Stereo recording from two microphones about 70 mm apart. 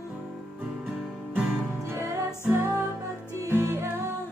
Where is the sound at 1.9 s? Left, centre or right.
Right.